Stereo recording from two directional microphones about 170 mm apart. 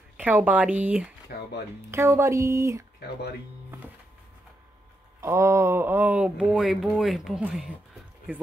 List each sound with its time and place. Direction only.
0.2 s speech: 10° right (ahead or behind)
3.0 s speech: 75° left (ahead or behind)
5.2 s speech: 15° right (ahead or behind)